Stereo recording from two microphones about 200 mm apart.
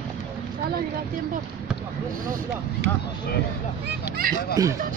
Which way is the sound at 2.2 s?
45° right (ahead or behind).